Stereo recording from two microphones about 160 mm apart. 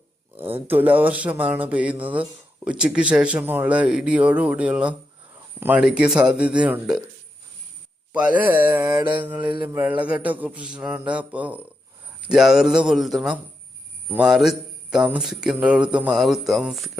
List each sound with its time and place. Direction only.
0.5 s speech: 10° right (ahead or behind)
8.1 s speech: 10° right (ahead or behind)
9.4 s mantra: 30° right (ahead or behind)
9.7 s speech: 10° right (ahead or behind)